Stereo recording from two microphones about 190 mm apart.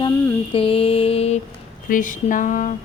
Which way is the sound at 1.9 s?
45° left (ahead or behind).